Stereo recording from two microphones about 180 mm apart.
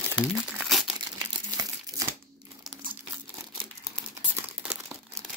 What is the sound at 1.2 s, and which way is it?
Crumpling, 20° right (ahead or behind).